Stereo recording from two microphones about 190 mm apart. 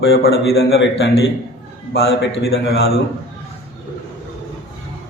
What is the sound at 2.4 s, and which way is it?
Speech, 60° left (ahead or behind).